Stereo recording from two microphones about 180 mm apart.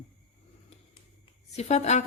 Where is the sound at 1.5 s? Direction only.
40° left (ahead or behind).